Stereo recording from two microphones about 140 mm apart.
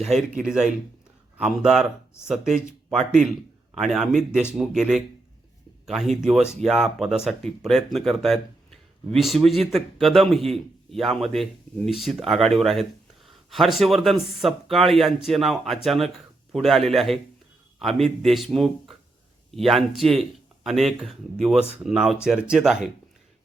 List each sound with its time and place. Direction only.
0.0 s speech: centre (ahead or behind)